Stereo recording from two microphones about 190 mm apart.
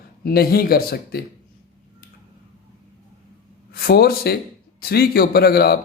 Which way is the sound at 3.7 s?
55° left (ahead or behind).